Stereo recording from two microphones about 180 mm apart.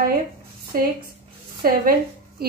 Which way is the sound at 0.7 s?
55° right (ahead or behind).